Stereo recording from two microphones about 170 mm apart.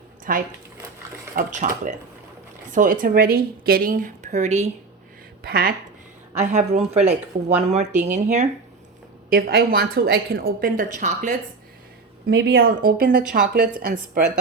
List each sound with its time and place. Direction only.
0.3 s a woman's voice: 55° right (ahead or behind); by 4.7 s 40° right (ahead or behind)
5.4 s speech: 65° right (ahead or behind)
6.3 s speech: 45° right (ahead or behind)
9.3 s a woman's voice: 65° right (ahead or behind); by 11.3 s 45° right (ahead or behind)
12.2 s a woman's voice: 75° right (ahead or behind); by 14.2 s 50° right (ahead or behind)